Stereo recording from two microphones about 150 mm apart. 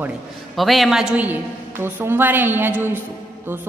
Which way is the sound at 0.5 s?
Centre (ahead or behind).